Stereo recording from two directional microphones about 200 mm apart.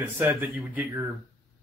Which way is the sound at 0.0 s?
10° right (ahead or behind).